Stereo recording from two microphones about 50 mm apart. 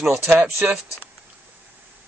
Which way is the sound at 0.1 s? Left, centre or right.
Right.